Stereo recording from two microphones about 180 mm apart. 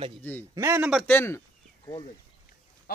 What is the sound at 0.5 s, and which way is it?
Speech, 15° right (ahead or behind).